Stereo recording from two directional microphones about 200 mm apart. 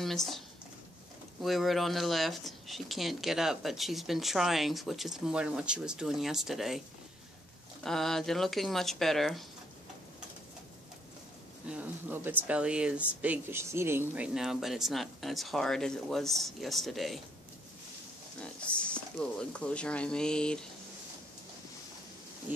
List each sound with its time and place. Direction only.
0.0 s speech: centre (ahead or behind)
1.4 s speech: centre (ahead or behind)
7.8 s speech: centre (ahead or behind)
11.7 s speech: 10° right (ahead or behind)
18.4 s speech: 5° left (ahead or behind)